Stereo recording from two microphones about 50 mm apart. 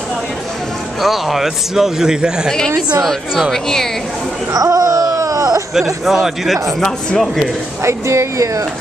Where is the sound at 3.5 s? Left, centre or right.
Centre.